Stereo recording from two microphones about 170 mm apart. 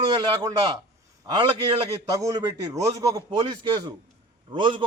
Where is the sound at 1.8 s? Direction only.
20° right (ahead or behind).